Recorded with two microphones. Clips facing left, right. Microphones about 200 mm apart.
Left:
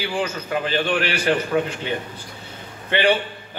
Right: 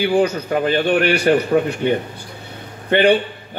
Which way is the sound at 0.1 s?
40° right (ahead or behind).